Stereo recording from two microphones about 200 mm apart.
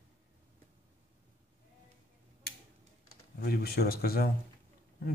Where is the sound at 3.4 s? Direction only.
50° left (ahead or behind).